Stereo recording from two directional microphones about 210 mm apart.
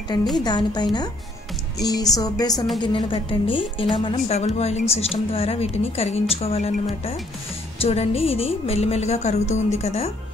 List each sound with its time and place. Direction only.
0.4 s a woman's voice: 20° left (ahead or behind)